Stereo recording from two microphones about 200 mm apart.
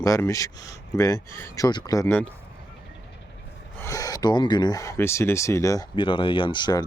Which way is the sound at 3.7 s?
15° left (ahead or behind).